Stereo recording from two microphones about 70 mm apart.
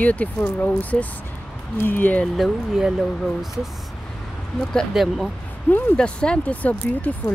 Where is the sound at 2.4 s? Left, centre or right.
Centre.